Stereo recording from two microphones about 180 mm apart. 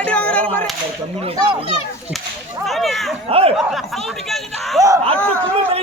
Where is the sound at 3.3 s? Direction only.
35° right (ahead or behind).